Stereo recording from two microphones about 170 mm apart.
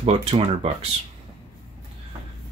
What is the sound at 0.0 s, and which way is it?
Speech, 35° right (ahead or behind).